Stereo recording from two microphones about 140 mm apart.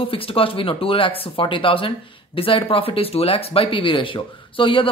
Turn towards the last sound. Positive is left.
turn(degrees=40)  # may be behind; listen again after turning